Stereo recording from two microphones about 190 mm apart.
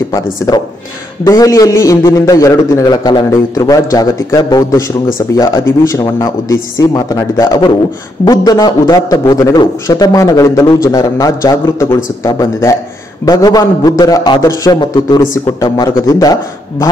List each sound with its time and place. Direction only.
1.2 s a man's voice: 20° left (ahead or behind)